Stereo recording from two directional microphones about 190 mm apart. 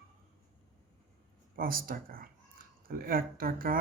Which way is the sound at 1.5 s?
50° right (ahead or behind).